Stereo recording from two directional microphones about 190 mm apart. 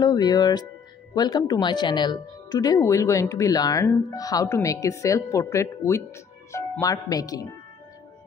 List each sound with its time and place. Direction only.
0.0 s speech: 20° left (ahead or behind)